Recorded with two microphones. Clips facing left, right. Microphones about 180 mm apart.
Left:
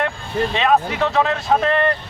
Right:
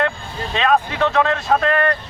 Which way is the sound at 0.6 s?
5° left (ahead or behind).